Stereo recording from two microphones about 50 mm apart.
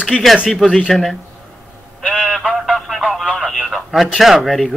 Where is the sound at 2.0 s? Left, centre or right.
Centre.